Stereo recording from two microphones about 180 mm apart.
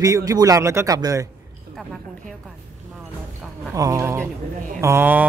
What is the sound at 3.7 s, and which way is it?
A man's voice, 20° right (ahead or behind).